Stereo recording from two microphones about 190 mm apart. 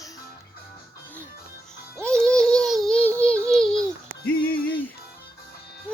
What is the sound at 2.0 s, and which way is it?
Music, 5° left (ahead or behind).